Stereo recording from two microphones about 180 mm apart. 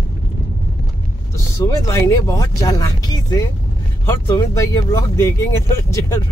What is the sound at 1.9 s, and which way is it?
Speech, 15° left (ahead or behind).